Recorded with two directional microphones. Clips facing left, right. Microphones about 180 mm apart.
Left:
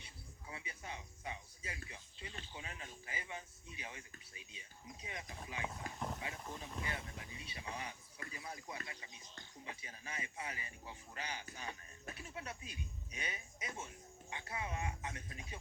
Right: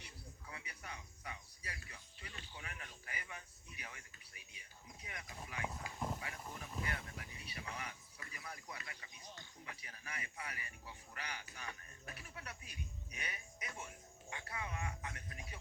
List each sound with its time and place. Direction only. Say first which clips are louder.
0.0 s cricket: even; 25° left (ahead or behind)
2.6 s a sound: left 1 dB; 25° left (ahead or behind)
9.6 s music: left 3 dB; 25° left (ahead or behind)